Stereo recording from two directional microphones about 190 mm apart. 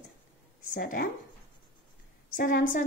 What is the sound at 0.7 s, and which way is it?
Speech, 45° left (ahead or behind).